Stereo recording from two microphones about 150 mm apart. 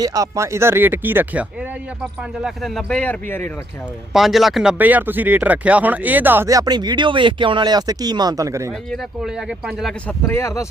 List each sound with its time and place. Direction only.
0.0 s speech: 25° right (ahead or behind)
2.4 s speech: centre (ahead or behind)
4.1 s speech: centre (ahead or behind); by 8.7 s 20° right (ahead or behind)
8.9 s speech: centre (ahead or behind)
10.1 s speech: 15° left (ahead or behind)